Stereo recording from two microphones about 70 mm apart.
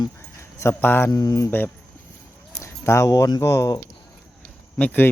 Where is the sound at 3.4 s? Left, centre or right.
Left.